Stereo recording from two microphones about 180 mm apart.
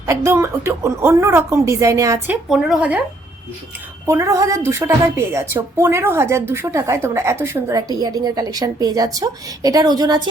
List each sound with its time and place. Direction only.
0.0 s a woman's voice: 15° right (ahead or behind)
4.0 s a woman's voice: 15° right (ahead or behind)